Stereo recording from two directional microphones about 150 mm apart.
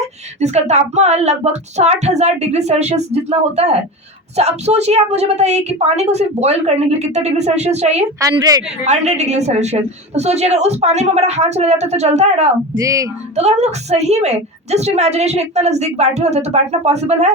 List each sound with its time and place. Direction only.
0.3 s a woman's voice: 50° right (ahead or behind)
8.2 s a woman's voice: 25° right (ahead or behind)
8.9 s a woman's voice: 50° right (ahead or behind)